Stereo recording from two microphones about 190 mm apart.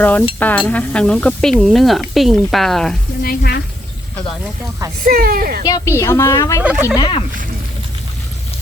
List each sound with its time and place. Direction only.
0.0 s a woman's voice: 10° left (ahead or behind)
0.3 s sizzle: 10° left (ahead or behind)
3.2 s speech: 55° left (ahead or behind)
5.0 s speech: 50° right (ahead or behind)
5.6 s a woman's voice: 15° left (ahead or behind)
6.6 s speech: 5° right (ahead or behind)
6.9 s speech: 25° left (ahead or behind)